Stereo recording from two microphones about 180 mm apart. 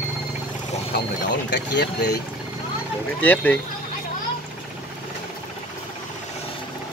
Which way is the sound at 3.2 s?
10° left (ahead or behind).